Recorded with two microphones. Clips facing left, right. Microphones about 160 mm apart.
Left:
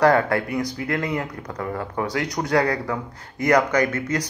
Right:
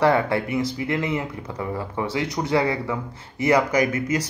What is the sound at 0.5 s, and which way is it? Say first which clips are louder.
Speech: right 1 dB; 5° right (ahead or behind).